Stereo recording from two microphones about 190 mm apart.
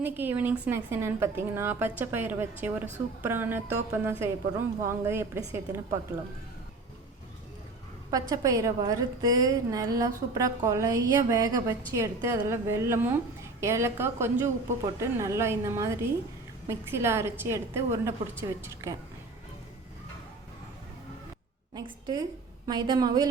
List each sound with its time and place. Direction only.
0.0 s a woman's voice: 10° right (ahead or behind)
8.1 s a woman's voice: 20° right (ahead or behind)
21.8 s a woman's voice: 20° right (ahead or behind)